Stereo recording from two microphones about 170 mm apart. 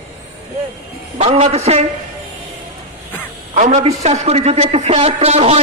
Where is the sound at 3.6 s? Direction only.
40° right (ahead or behind).